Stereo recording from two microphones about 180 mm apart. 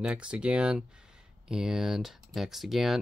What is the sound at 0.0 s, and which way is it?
Speech, 5° right (ahead or behind).